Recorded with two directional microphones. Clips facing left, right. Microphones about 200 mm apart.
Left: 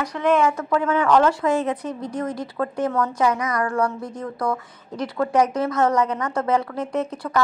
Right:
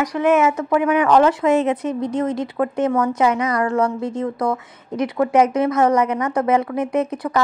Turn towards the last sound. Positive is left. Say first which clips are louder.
# right 3 dB
turn(degrees=-20)  # may be behind; listen again after turning